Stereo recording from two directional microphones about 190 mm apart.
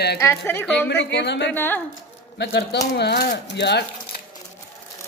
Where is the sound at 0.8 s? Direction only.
65° left (ahead or behind).